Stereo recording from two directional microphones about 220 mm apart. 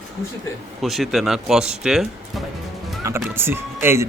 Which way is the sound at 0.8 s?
Centre (ahead or behind).